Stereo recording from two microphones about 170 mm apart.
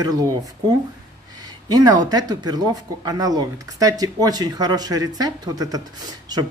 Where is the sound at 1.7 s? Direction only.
25° right (ahead or behind).